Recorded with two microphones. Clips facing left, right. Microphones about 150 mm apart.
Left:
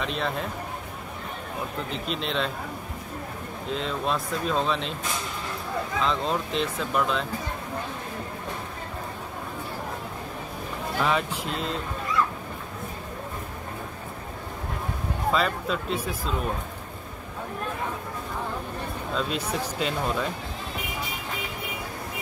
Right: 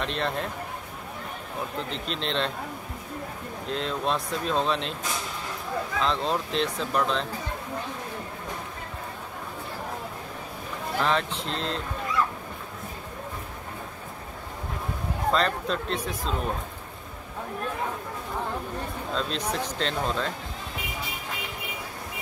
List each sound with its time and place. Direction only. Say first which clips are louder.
0.0 s speech: even; centre (ahead or behind)
1.9 s speech: left 1 dB; 5° left (ahead or behind)
3.7 s speech: even; centre (ahead or behind)
5.9 s speech: even; centre (ahead or behind)
11.0 s speech: even; 5° left (ahead or behind)
15.3 s speech: even; 5° left (ahead or behind)
19.1 s speech: left 1 dB; 10° left (ahead or behind)